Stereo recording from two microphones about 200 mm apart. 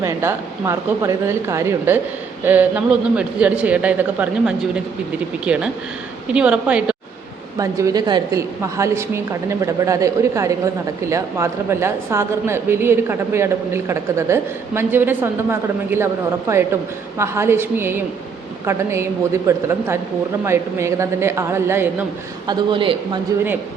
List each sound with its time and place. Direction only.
0.0 s a woman's voice: 15° right (ahead or behind)
7.6 s a woman's voice: 15° right (ahead or behind)
17.2 s a woman's voice: 15° right (ahead or behind)
22.4 s a man's voice: 25° right (ahead or behind)